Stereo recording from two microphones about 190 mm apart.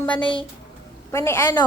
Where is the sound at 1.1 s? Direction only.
15° left (ahead or behind).